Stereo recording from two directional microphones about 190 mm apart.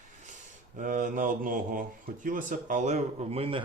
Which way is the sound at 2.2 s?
45° right (ahead or behind).